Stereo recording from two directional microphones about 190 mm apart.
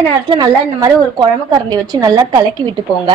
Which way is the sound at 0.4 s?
20° right (ahead or behind).